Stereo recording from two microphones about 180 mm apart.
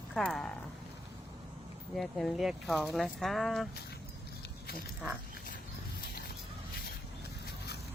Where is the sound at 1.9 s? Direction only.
Centre (ahead or behind).